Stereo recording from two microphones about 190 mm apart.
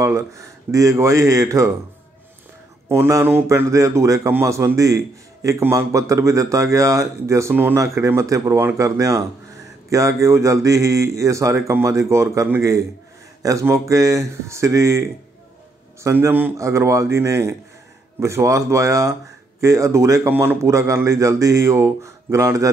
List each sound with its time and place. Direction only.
0.0 s speech: 15° right (ahead or behind)
2.9 s speech: 15° right (ahead or behind)